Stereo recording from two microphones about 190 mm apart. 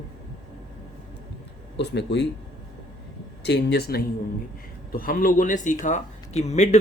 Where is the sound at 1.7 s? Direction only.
65° left (ahead or behind).